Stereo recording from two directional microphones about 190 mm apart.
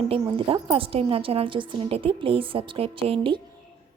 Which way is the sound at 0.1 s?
25° right (ahead or behind).